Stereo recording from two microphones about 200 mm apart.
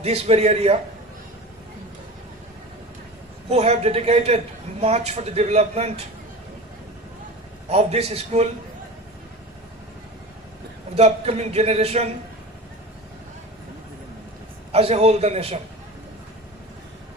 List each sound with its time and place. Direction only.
0.0 s a man's voice: 30° right (ahead or behind)
3.5 s a man's voice: 30° right (ahead or behind)
7.7 s a man's voice: 30° right (ahead or behind)
10.9 s a man's voice: 30° right (ahead or behind)
14.7 s a man's voice: 30° right (ahead or behind)